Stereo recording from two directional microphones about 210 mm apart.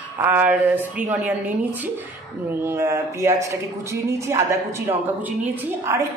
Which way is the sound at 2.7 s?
10° right (ahead or behind).